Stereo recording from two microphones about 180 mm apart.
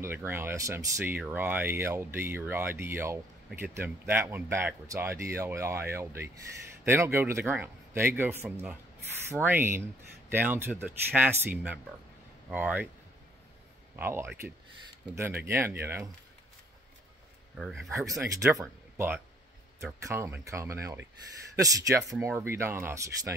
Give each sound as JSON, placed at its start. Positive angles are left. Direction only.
{"t": 0.0, "sound": "speech", "side_deg": -10}
{"t": 13.9, "sound": "speech", "side_deg": -15}
{"t": 17.6, "sound": "speech", "side_deg": 0}
{"t": 18.2, "sound": "speech", "side_deg": -15}